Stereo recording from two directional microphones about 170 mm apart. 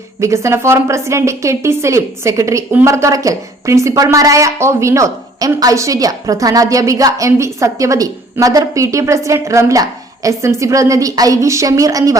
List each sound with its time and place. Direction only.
0.2 s a woman's voice: 15° right (ahead or behind)